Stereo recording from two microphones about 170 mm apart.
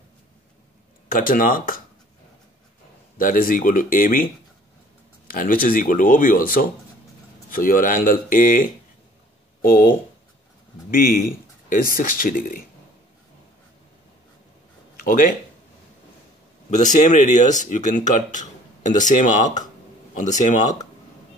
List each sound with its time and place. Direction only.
1.0 s speech: 55° left (ahead or behind)
3.2 s speech: 55° left (ahead or behind)
5.3 s speech: 55° left (ahead or behind)
15.0 s speech: 55° left (ahead or behind)
16.7 s speech: 45° left (ahead or behind)